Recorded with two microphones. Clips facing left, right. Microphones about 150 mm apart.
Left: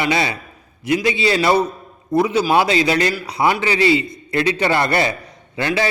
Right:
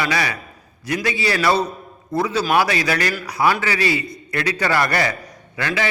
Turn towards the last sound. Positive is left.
turn(degrees=25)  # may be behind; listen again after turning